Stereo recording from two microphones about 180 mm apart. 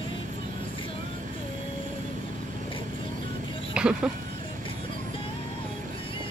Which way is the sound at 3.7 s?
5° right (ahead or behind).